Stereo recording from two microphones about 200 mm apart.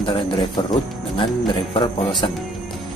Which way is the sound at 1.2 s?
25° left (ahead or behind).